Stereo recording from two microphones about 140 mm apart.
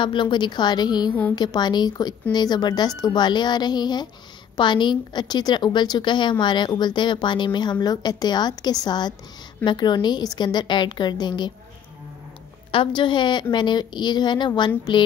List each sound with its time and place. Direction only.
0.0 s a woman's voice: 35° left (ahead or behind)
12.7 s a woman's voice: 35° left (ahead or behind)